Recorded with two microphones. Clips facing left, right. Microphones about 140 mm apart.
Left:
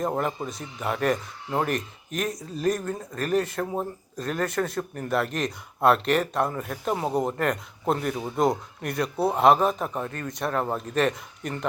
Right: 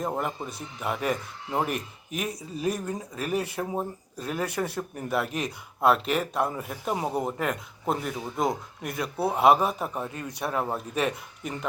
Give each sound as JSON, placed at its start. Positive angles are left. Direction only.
{"t": 0.0, "sound": "speech", "side_deg": -5}